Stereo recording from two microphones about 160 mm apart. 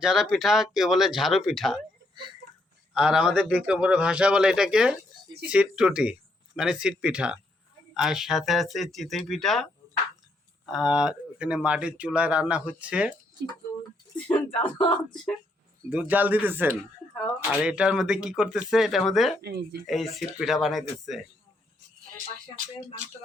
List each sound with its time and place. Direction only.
0.0 s a man's voice: 5° right (ahead or behind)
2.9 s a man's voice: 5° right (ahead or behind)
10.7 s speech: 5° right (ahead or behind)
14.3 s speech: 10° left (ahead or behind)
15.9 s a man's voice: 10° right (ahead or behind)
19.4 s speech: 90° right
19.9 s a man's voice: centre (ahead or behind)